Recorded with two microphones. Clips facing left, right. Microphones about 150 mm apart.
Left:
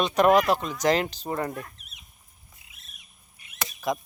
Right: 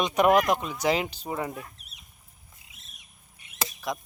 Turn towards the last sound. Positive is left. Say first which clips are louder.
# left 4 dB
turn(degrees=0)  # may be behind; listen again after turning